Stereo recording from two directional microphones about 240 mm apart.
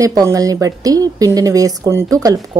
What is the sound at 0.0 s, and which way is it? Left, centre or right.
A woman's voice, centre.